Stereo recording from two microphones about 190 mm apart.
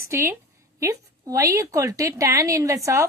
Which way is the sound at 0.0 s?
15° right (ahead or behind).